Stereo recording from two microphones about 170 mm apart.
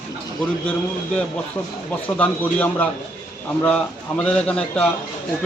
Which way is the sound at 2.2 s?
10° left (ahead or behind).